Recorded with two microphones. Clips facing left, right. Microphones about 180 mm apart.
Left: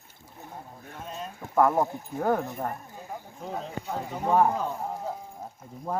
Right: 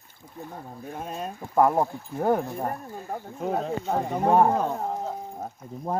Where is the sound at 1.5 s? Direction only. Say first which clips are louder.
Right 1 dB; 15° right (ahead or behind).